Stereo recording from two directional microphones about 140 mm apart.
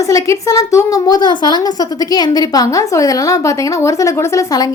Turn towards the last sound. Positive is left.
turn(degrees=25)  # may be behind; listen again after turning